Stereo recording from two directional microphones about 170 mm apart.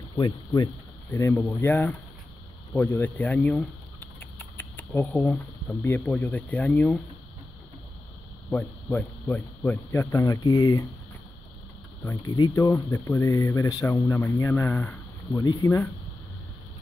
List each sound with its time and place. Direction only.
0.2 s speech: 25° left (ahead or behind)
1.1 s speech: 15° left (ahead or behind)
8.5 s speech: 10° left (ahead or behind)
12.0 s speech: 20° left (ahead or behind)